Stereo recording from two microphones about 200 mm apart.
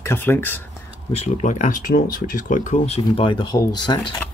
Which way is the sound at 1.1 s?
35° left (ahead or behind).